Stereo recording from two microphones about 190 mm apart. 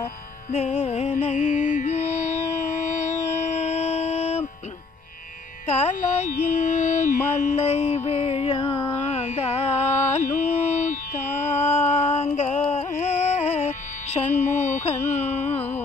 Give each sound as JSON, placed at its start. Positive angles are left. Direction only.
{"t": 0.0, "sound": "music", "side_deg": 30}
{"t": 5.7, "sound": "carnatic music", "side_deg": 35}
{"t": 7.3, "sound": "music", "side_deg": 35}
{"t": 8.9, "sound": "carnatic music", "side_deg": 35}
{"t": 10.8, "sound": "music", "side_deg": 40}
{"t": 14.5, "sound": "carnatic music", "side_deg": 40}